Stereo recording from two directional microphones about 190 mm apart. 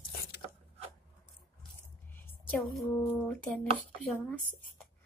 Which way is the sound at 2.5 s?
Centre (ahead or behind).